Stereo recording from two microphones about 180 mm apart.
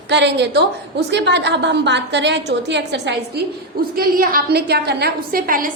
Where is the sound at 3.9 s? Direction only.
55° right (ahead or behind).